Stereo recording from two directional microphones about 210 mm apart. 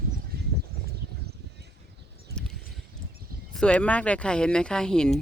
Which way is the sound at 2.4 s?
Centre (ahead or behind).